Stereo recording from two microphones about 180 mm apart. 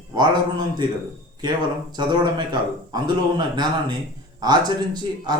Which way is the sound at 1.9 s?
25° right (ahead or behind).